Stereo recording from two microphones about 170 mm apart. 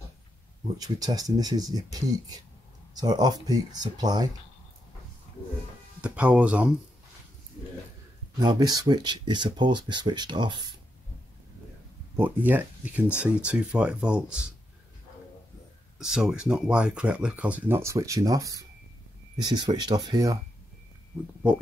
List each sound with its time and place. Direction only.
0.7 s speech: 20° right (ahead or behind)
3.0 s speech: 25° right (ahead or behind)
5.9 s speech: 5° right (ahead or behind)
8.4 s speech: 25° right (ahead or behind)
12.2 s speech: 10° right (ahead or behind)
16.0 s speech: 5° right (ahead or behind); by 20.3 s 20° right (ahead or behind)